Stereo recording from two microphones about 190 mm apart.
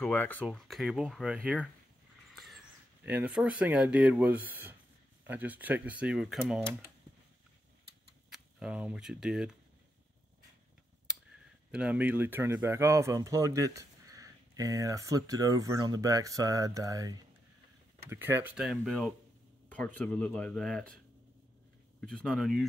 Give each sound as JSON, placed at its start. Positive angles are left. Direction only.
{"t": 0.0, "sound": "speech", "side_deg": 10}
{"t": 2.3, "sound": "a sound", "side_deg": 0}
{"t": 3.1, "sound": "speech", "side_deg": -5}
{"t": 8.3, "sound": "speech", "side_deg": -5}
{"t": 11.7, "sound": "speech", "side_deg": -5}
{"t": 22.0, "sound": "speech", "side_deg": 5}